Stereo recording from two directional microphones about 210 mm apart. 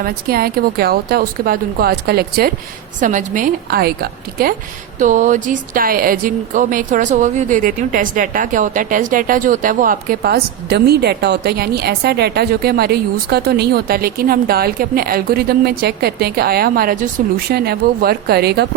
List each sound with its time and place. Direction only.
0.0 s speech: 45° right (ahead or behind)